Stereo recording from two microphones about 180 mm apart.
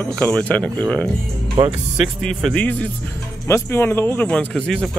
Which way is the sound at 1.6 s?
20° right (ahead or behind).